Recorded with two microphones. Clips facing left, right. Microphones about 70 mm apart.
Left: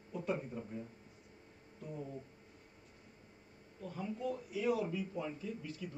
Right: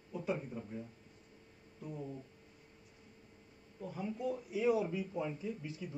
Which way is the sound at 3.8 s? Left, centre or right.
Centre.